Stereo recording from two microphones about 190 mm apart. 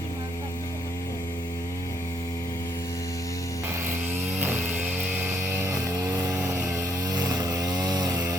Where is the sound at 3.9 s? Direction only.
10° right (ahead or behind).